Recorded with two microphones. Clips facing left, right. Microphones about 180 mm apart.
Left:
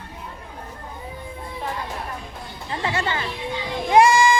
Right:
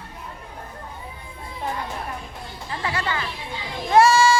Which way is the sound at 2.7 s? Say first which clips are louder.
Left 2 dB; 25° left (ahead or behind).